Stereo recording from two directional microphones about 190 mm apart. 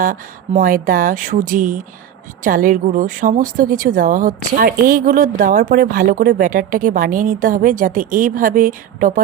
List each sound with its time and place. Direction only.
0.0 s a woman's voice: 45° right (ahead or behind)